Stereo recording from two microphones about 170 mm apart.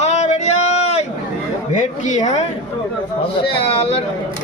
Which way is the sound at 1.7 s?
45° left (ahead or behind).